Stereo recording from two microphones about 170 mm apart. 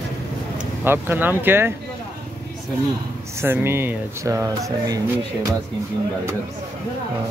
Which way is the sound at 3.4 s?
15° right (ahead or behind).